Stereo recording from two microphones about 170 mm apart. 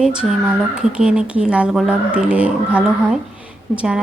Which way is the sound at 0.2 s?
5° right (ahead or behind).